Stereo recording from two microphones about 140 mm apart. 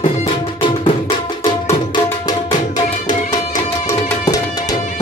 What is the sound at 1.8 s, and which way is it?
Tabla, 30° left (ahead or behind).